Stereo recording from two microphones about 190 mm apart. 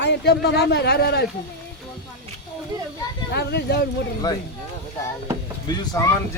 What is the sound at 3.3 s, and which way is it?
Speech, 60° left (ahead or behind).